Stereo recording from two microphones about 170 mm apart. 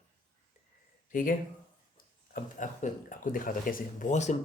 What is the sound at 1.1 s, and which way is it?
Speech, 55° left (ahead or behind).